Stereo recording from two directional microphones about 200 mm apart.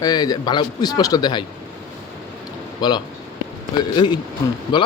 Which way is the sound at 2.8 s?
20° left (ahead or behind).